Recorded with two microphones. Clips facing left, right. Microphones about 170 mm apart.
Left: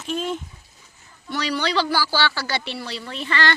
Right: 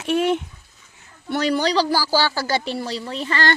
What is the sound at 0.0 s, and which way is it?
Speech, 70° right (ahead or behind).